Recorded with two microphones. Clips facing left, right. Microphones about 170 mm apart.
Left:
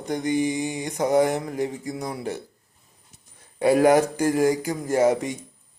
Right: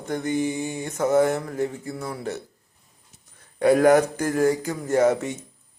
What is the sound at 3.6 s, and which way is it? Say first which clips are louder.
A man's voice: right 1 dB; 10° left (ahead or behind).